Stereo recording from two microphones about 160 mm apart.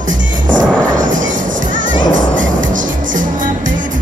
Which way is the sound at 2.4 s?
55° right (ahead or behind).